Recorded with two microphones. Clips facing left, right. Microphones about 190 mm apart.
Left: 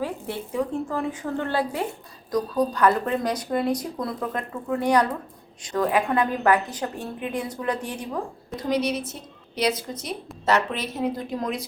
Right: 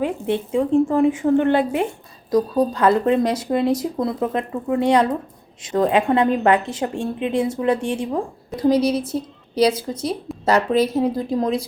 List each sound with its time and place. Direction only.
0.0 s a woman's voice: 25° right (ahead or behind)